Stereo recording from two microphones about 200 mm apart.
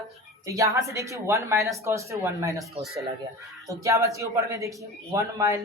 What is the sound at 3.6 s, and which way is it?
A man's voice, 15° right (ahead or behind).